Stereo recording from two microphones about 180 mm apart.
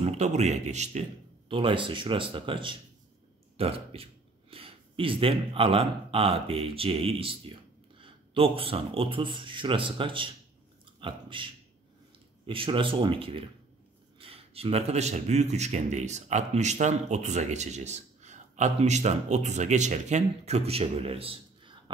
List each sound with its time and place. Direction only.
0.0 s a man's voice: 35° right (ahead or behind)
12.4 s a man's voice: 30° right (ahead or behind)